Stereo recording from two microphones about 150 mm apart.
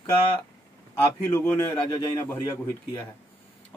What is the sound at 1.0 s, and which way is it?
A man's voice, 15° left (ahead or behind).